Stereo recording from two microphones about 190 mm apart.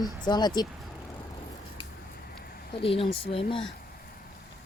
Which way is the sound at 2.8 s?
30° left (ahead or behind).